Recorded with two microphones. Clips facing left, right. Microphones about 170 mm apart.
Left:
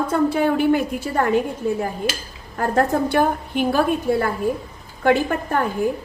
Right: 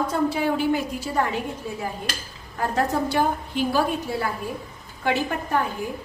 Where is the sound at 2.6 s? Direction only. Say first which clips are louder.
Left 5 dB; 50° left (ahead or behind).